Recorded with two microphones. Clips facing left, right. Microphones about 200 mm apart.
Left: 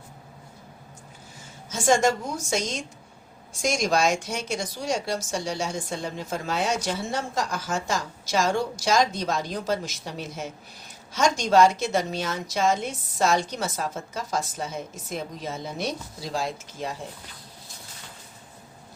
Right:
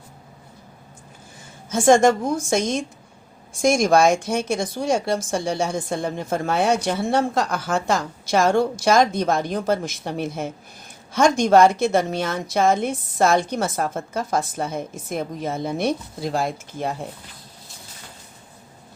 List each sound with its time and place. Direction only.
1.7 s speech: 55° right (ahead or behind)